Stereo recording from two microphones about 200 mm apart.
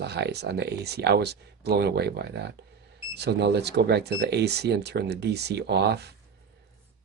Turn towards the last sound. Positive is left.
turn(degrees=-55)  # may be behind; listen again after turning